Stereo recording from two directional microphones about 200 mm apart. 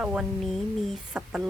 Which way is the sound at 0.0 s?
5° right (ahead or behind).